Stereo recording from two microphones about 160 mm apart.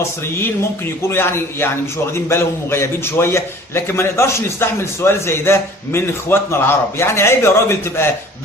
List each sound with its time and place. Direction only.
1.0 s a man's voice: 15° left (ahead or behind)